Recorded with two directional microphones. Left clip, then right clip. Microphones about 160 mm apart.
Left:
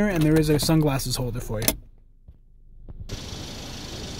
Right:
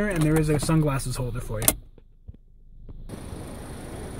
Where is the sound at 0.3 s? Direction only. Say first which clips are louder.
Left 5 dB; 25° left (ahead or behind).